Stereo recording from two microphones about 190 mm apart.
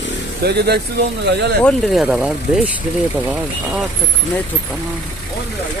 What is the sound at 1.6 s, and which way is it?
Speech, 5° left (ahead or behind).